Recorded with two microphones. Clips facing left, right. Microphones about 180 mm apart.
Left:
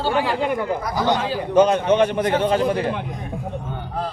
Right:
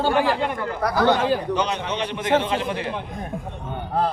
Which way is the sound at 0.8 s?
60° right (ahead or behind).